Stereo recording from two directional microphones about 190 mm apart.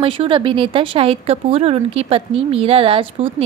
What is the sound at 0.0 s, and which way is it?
Speech, 30° right (ahead or behind).